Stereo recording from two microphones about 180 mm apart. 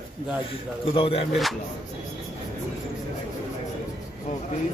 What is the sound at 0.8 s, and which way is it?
Speech, 30° left (ahead or behind).